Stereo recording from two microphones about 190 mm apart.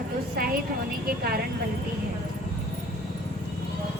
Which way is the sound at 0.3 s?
50° right (ahead or behind).